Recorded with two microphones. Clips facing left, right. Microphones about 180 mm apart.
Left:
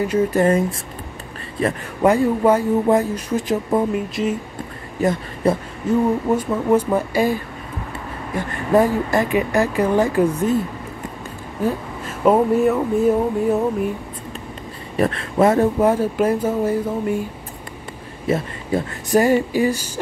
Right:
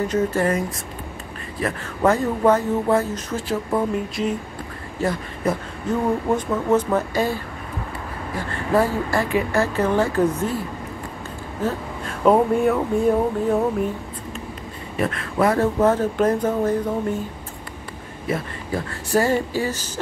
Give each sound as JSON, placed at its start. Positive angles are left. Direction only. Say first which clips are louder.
{"t": 0.1, "sound": "speech", "louder": "left 3 dB", "side_deg": 15}
{"t": 0.5, "sound": "speech", "louder": "left 5 dB", "side_deg": 30}
{"t": 2.0, "sound": "speech", "louder": "left 2 dB", "side_deg": 10}
{"t": 3.9, "sound": "speech", "louder": "left 2 dB", "side_deg": 5}
{"t": 5.0, "sound": "speech", "louder": "left 4 dB", "side_deg": 15}
{"t": 5.4, "sound": "a sound", "louder": "left 4 dB", "side_deg": 30}
{"t": 5.9, "sound": "speech", "louder": "left 3 dB", "side_deg": 10}
{"t": 8.4, "sound": "speech", "louder": "left 4 dB", "side_deg": 20}
{"t": 11.6, "sound": "speech", "louder": "left 3 dB", "side_deg": 5}
{"t": 15.0, "sound": "speech", "louder": "left 4 dB", "side_deg": 30}
{"t": 15.8, "sound": "speech", "louder": "left 1 dB", "side_deg": 10}
{"t": 18.2, "sound": "speech", "louder": "left 4 dB", "side_deg": 25}